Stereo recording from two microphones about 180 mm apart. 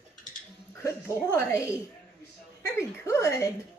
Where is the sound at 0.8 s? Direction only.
15° left (ahead or behind).